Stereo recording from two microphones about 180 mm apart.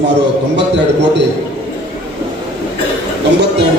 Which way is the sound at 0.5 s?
75° right (ahead or behind).